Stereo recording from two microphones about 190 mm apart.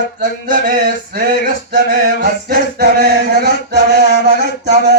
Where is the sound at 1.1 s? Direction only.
50° right (ahead or behind).